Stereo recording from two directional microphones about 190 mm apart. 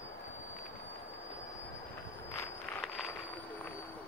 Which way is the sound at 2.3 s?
5° left (ahead or behind).